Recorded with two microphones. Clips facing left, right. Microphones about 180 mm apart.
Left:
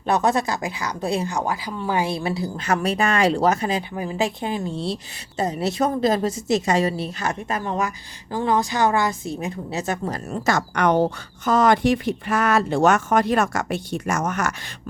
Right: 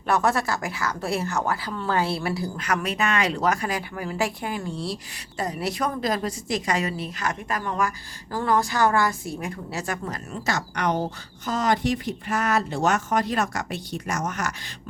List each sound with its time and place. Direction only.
0.1 s speech: 20° left (ahead or behind)
10.3 s speech: 50° left (ahead or behind)